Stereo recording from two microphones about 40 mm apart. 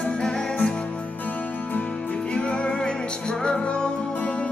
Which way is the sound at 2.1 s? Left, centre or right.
Left.